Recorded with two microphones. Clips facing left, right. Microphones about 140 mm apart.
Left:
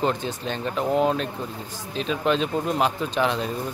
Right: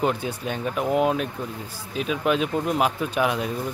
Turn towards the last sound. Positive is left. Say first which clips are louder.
# even
turn(degrees=-10)  # may be behind; listen again after turning